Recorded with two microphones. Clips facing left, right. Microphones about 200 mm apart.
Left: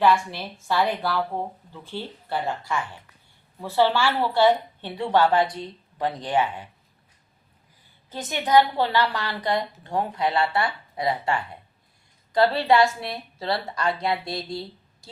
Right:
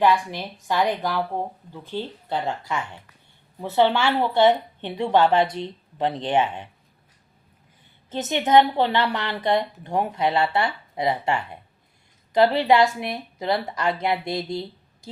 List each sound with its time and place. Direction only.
0.0 s a woman's voice: 15° right (ahead or behind)
8.1 s a woman's voice: 20° right (ahead or behind)